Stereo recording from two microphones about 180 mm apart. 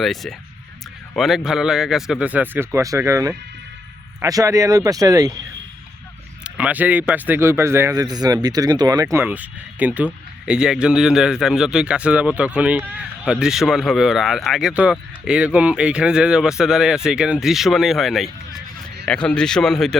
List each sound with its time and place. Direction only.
0.0 s a man's voice: centre (ahead or behind); by 5.4 s 20° right (ahead or behind)
6.4 s a man's voice: 10° right (ahead or behind)